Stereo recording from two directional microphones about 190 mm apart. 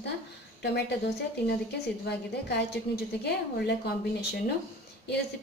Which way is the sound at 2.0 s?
60° left (ahead or behind).